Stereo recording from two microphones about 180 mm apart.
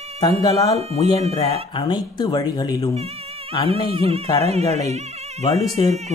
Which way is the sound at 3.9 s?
35° right (ahead or behind).